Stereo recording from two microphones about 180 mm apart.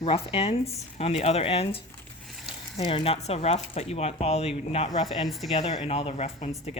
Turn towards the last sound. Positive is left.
turn(degrees=35)  # may be behind; listen again after turning